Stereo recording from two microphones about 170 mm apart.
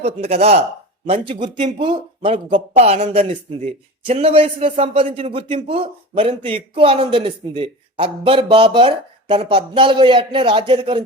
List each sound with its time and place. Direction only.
0.0 s speech: 35° right (ahead or behind)